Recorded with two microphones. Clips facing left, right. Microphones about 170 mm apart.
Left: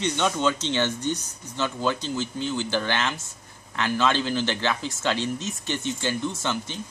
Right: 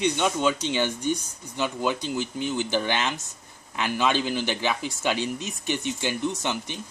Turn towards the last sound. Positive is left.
turn(degrees=-15)  # may be behind; listen again after turning